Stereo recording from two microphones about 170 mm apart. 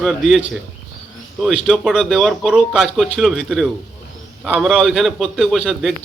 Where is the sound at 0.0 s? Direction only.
Centre (ahead or behind).